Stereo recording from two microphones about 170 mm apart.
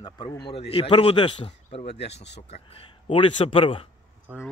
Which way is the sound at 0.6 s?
35° left (ahead or behind).